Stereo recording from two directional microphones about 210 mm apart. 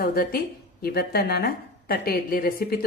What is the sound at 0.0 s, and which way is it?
A woman's voice, 45° left (ahead or behind).